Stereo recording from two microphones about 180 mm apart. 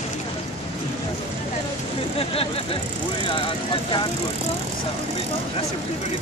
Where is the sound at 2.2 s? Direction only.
30° left (ahead or behind).